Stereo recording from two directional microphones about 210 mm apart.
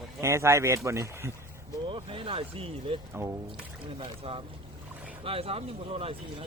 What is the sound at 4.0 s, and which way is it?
Speech, 25° right (ahead or behind).